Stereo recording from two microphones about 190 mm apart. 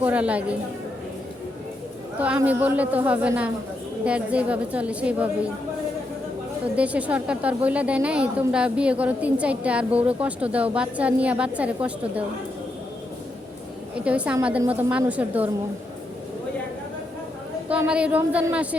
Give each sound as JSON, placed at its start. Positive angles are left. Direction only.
{"t": 0.0, "sound": "a woman's voice", "side_deg": -5}
{"t": 2.1, "sound": "a woman's voice", "side_deg": -5}
{"t": 6.7, "sound": "a woman's voice", "side_deg": -5}
{"t": 14.0, "sound": "a woman's voice", "side_deg": -5}
{"t": 17.7, "sound": "a woman's voice", "side_deg": -5}